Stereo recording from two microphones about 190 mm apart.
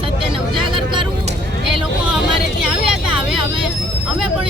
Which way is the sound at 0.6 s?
25° right (ahead or behind).